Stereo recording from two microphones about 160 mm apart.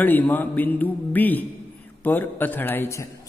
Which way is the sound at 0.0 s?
10° left (ahead or behind).